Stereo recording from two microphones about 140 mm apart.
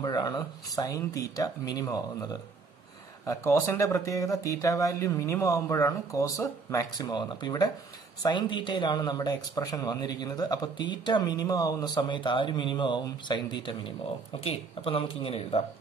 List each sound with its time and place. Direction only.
0.0 s speech: 30° left (ahead or behind)
14.4 s speech: 45° left (ahead or behind)